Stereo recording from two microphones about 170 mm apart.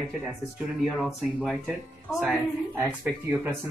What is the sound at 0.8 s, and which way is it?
A woman's voice, centre (ahead or behind).